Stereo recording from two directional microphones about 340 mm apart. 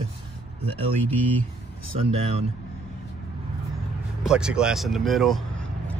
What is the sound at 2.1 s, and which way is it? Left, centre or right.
Speech, centre.